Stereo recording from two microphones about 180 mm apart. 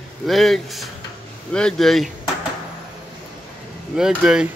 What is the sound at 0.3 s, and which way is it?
Speech, centre (ahead or behind).